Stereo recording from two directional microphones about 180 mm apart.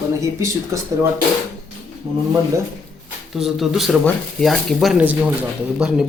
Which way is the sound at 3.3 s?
Centre (ahead or behind).